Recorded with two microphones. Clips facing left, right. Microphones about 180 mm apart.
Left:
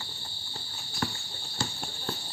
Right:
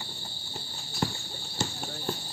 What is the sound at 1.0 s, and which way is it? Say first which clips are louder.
Clip-clop: right 2 dB; 25° right (ahead or behind).